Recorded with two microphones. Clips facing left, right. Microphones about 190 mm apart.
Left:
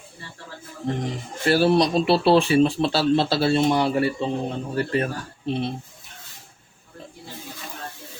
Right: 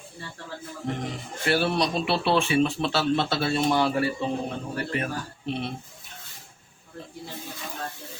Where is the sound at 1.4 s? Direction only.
35° left (ahead or behind).